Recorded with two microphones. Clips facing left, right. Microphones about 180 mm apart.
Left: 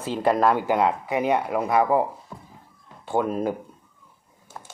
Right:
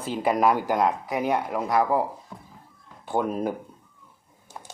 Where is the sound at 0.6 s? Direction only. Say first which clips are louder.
Left 2 dB; 15° left (ahead or behind).